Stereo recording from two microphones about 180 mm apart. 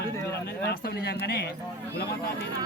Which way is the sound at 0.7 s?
60° left (ahead or behind).